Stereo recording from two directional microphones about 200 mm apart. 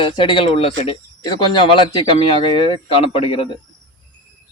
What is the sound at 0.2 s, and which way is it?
A man's voice, 25° left (ahead or behind).